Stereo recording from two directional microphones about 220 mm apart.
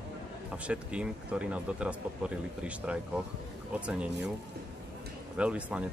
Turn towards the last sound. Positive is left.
turn(degrees=-5)  # may be behind; listen again after turning